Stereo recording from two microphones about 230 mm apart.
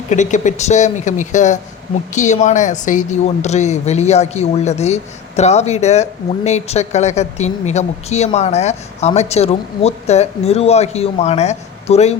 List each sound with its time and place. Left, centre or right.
0.1 s speech: left